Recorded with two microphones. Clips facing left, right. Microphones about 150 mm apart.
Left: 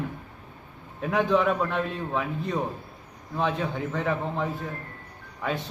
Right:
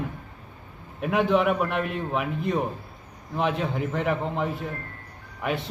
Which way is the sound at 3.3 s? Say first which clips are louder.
Right 1 dB; 15° right (ahead or behind).